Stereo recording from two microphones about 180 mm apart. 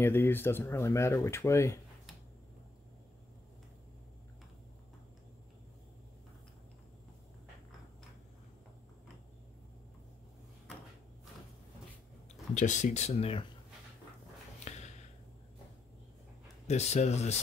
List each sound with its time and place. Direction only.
0.0 s speech: 10° left (ahead or behind)
12.5 s speech: 45° left (ahead or behind)
14.7 s a sound: 40° left (ahead or behind)
16.6 s speech: 40° left (ahead or behind)